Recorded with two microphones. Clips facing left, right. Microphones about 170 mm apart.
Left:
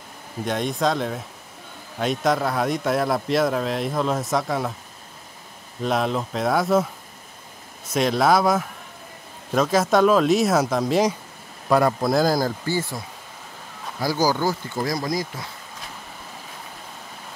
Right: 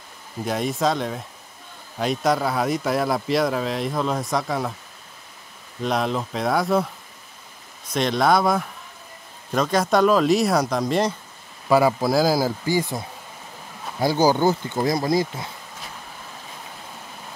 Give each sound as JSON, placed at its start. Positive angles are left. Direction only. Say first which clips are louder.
{"t": 0.5, "sound": "speech", "louder": "even", "side_deg": 0}
{"t": 5.8, "sound": "speech", "louder": "left 1 dB", "side_deg": 0}
{"t": 7.9, "sound": "speech", "louder": "left 1 dB", "side_deg": 5}
{"t": 13.9, "sound": "speech", "louder": "right 3 dB", "side_deg": -25}